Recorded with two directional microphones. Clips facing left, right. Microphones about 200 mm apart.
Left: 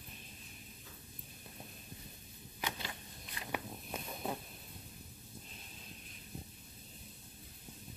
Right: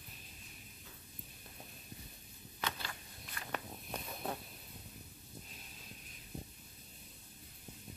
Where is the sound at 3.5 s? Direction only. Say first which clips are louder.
Left 2 dB; 5° left (ahead or behind).